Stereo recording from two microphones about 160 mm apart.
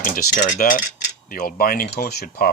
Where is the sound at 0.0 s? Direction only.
60° left (ahead or behind).